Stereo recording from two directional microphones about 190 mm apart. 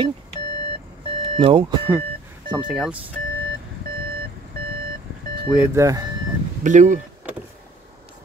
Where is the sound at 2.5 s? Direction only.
5° right (ahead or behind).